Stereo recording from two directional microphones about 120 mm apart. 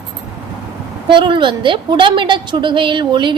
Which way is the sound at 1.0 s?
40° right (ahead or behind).